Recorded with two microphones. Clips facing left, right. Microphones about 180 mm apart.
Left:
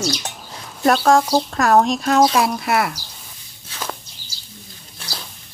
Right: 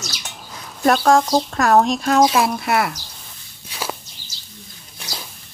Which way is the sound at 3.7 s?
10° right (ahead or behind).